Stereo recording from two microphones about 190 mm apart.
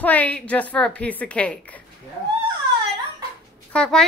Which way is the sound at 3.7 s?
5° left (ahead or behind).